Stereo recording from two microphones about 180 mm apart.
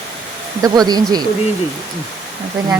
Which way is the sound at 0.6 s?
20° right (ahead or behind).